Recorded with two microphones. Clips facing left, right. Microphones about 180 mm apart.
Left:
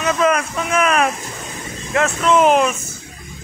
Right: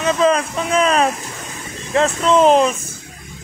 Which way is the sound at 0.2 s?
30° right (ahead or behind).